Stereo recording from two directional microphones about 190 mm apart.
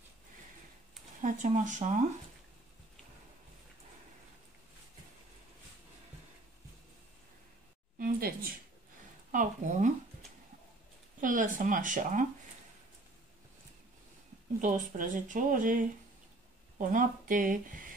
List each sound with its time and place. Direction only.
1.2 s speech: 40° right (ahead or behind)
8.0 s a sound: 50° right (ahead or behind)
9.3 s speech: 40° right (ahead or behind)
11.1 s speech: 45° right (ahead or behind)
14.6 s speech: 45° right (ahead or behind)